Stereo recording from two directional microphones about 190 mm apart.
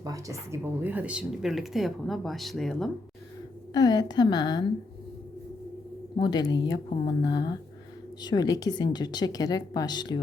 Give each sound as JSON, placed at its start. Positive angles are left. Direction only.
{"t": 0.0, "sound": "a woman's voice", "side_deg": -15}
{"t": 3.7, "sound": "a woman's voice", "side_deg": 20}
{"t": 6.1, "sound": "a woman's voice", "side_deg": 20}